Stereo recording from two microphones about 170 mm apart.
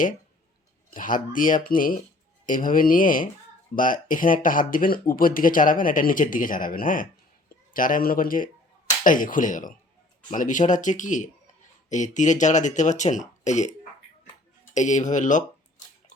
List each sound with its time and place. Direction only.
0.9 s speech: 50° left (ahead or behind)
14.7 s speech: 45° left (ahead or behind)